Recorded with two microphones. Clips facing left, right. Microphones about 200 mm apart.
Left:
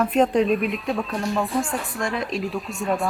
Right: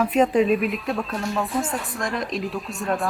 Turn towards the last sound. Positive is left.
turn(degrees=0)  # may be behind; listen again after turning